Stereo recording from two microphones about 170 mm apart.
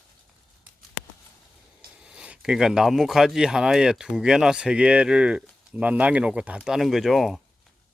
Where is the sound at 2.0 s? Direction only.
5° right (ahead or behind).